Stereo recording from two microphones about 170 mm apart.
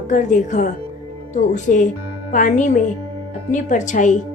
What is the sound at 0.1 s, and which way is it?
Speech, 45° left (ahead or behind).